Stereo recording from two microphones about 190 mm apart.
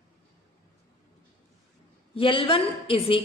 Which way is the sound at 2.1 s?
30° left (ahead or behind).